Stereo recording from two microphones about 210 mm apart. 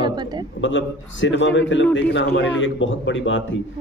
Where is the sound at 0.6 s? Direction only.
60° left (ahead or behind).